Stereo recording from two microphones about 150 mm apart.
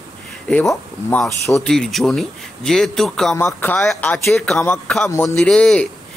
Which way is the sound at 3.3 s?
15° left (ahead or behind).